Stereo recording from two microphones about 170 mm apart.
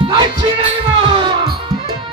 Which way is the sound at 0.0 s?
30° right (ahead or behind).